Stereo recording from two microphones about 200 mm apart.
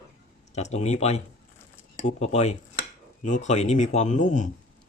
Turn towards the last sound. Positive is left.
turn(degrees=40)  # may be behind; listen again after turning